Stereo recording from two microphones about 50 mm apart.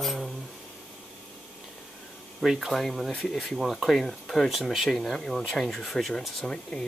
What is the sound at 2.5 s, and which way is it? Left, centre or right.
Speech, centre.